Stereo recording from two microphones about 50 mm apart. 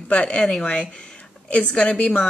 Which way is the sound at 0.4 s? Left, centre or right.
Centre.